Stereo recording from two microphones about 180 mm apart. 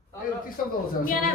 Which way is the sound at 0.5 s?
50° left (ahead or behind).